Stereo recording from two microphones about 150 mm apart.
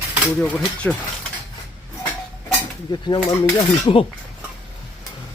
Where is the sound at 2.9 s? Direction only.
30° left (ahead or behind).